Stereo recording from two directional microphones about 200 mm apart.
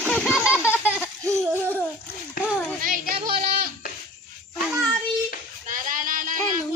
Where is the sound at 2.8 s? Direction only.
45° right (ahead or behind).